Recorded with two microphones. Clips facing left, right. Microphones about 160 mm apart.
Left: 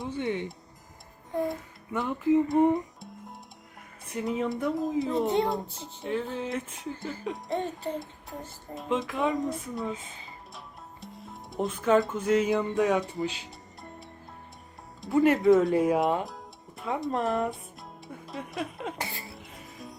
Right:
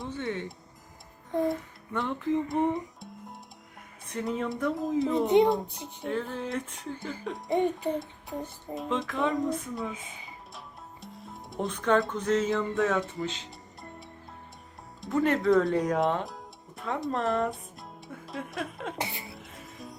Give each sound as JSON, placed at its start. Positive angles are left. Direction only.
{"t": 0.1, "sound": "music", "side_deg": 15}
{"t": 1.3, "sound": "music", "side_deg": 0}
{"t": 4.1, "sound": "speech", "side_deg": 0}
{"t": 5.6, "sound": "music", "side_deg": -15}
{"t": 6.0, "sound": "speech", "side_deg": 5}
{"t": 7.6, "sound": "music", "side_deg": -15}
{"t": 7.9, "sound": "speech", "side_deg": 0}
{"t": 15.2, "sound": "speech", "side_deg": 5}
{"t": 18.9, "sound": "speech", "side_deg": -20}
{"t": 19.3, "sound": "music", "side_deg": 0}